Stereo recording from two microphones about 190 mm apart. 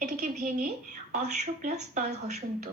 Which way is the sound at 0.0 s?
40° right (ahead or behind).